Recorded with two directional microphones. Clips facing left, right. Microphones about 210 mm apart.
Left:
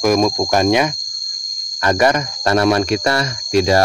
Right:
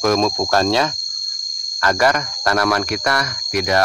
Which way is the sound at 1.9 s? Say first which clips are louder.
Left 2 dB; 20° left (ahead or behind).